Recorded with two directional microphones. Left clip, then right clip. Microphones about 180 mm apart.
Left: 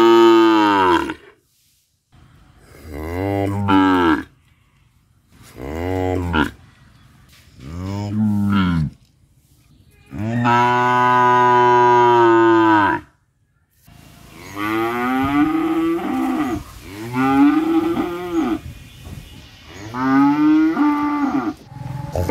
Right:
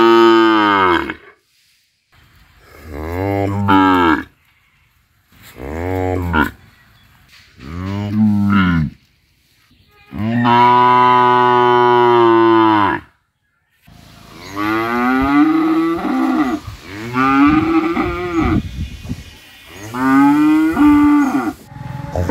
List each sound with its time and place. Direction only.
0.2 s moo: 35° left (ahead or behind)
2.8 s a sound: 10° left (ahead or behind)
3.2 s music: 10° left (ahead or behind)
3.6 s moo: 10° left (ahead or behind)
5.6 s a sound: 30° left (ahead or behind)
6.2 s a sound: 15° left (ahead or behind)
7.7 s a sound: 25° left (ahead or behind)
10.1 s moo: 15° left (ahead or behind)
14.5 s livestock: 40° right (ahead or behind)
17.1 s moo: 25° right (ahead or behind)
17.9 s cattle: 25° right (ahead or behind)
19.8 s moo: 45° right (ahead or behind)